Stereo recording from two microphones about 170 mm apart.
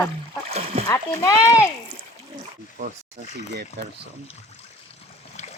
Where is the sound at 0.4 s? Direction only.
35° right (ahead or behind).